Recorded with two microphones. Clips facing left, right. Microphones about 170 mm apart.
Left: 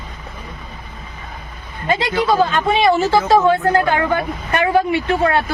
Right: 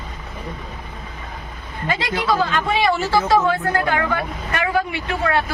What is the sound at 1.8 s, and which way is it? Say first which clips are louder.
Speech: left 4 dB; 20° left (ahead or behind).